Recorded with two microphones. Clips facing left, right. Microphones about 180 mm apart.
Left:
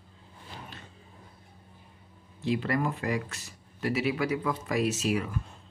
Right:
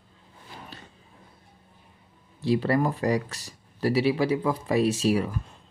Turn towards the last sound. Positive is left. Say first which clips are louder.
# right 5 dB
turn(degrees=-30)  # may be behind; listen again after turning